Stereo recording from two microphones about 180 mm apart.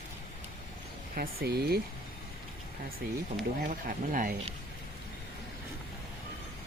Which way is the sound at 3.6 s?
50° right (ahead or behind).